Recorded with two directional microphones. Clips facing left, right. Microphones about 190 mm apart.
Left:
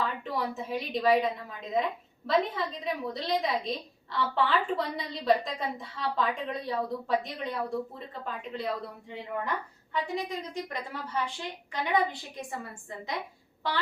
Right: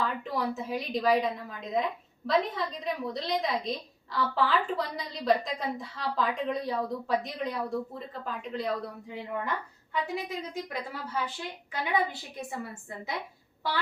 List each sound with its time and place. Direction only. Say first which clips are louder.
0.0 s a woman's voice: right 1 dB; centre (ahead or behind)